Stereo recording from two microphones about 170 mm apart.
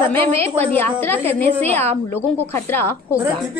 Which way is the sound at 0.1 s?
15° left (ahead or behind).